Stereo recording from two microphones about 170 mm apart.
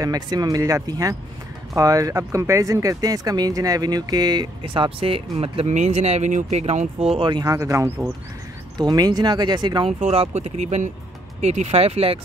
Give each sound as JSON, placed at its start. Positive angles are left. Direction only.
{"t": 0.0, "sound": "speech", "side_deg": -20}
{"t": 9.9, "sound": "speech", "side_deg": -40}